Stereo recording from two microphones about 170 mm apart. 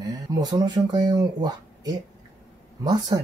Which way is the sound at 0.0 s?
20° right (ahead or behind).